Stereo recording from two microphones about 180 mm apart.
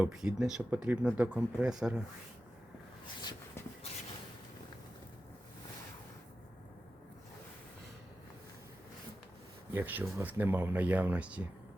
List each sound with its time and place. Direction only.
0.0 s speech: 5° right (ahead or behind)
3.2 s dog: 25° left (ahead or behind)
9.7 s speech: 10° right (ahead or behind)